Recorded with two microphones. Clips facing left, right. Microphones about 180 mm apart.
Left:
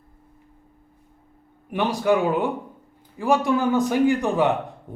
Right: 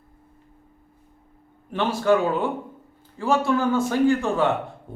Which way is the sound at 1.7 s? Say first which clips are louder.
Even; 15° left (ahead or behind).